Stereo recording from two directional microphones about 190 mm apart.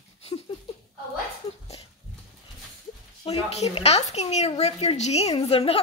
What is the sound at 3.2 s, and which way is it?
A woman's voice, 30° left (ahead or behind).